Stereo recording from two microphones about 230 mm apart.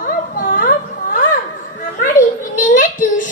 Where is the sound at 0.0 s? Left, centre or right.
Left.